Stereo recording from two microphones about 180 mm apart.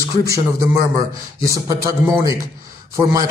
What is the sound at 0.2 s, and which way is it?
A man's voice, 20° right (ahead or behind).